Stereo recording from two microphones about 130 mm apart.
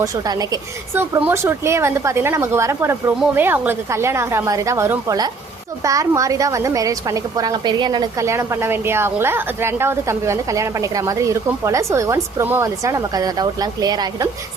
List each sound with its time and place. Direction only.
0.0 s speech: 25° right (ahead or behind)
8.2 s speech: 20° right (ahead or behind)